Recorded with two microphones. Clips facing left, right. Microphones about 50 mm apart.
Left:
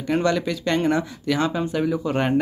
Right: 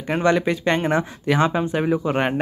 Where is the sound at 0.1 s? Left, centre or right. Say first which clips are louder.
Right 2 dB; right.